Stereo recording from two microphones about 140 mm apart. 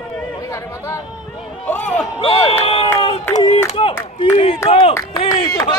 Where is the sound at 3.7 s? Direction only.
40° left (ahead or behind).